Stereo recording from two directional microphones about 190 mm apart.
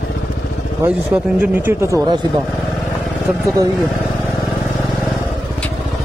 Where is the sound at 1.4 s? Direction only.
15° right (ahead or behind).